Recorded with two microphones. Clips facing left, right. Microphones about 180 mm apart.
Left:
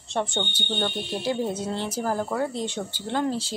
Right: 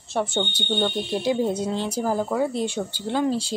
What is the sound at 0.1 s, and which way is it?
Speech, 5° right (ahead or behind).